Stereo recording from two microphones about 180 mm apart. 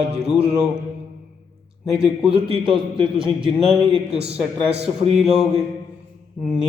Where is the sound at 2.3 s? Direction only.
30° right (ahead or behind).